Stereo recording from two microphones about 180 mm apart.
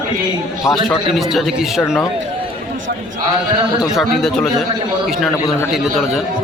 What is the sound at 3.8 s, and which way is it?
A man's voice, centre (ahead or behind).